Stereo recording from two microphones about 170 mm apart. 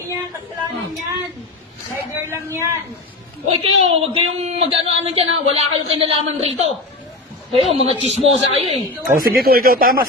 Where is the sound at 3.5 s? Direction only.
35° right (ahead or behind).